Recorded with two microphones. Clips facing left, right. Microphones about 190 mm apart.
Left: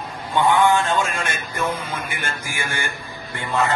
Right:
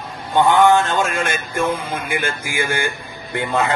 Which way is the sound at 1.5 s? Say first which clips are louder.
Right 3 dB; 55° right (ahead or behind).